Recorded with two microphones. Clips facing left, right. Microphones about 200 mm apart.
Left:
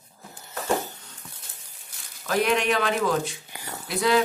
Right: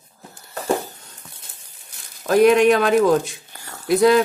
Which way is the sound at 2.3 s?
45° right (ahead or behind).